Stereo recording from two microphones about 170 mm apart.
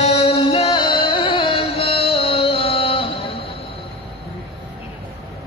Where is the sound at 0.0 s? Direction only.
40° left (ahead or behind).